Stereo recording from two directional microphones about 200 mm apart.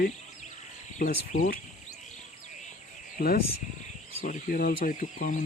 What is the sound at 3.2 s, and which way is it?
Speech, 50° left (ahead or behind).